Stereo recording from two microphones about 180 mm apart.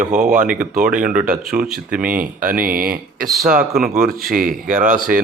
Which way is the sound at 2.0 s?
50° right (ahead or behind).